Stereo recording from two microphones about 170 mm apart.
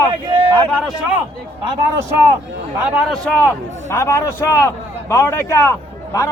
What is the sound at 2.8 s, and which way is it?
A man's voice, 5° left (ahead or behind).